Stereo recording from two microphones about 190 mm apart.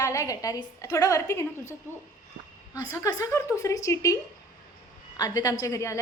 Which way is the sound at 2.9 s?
15° left (ahead or behind).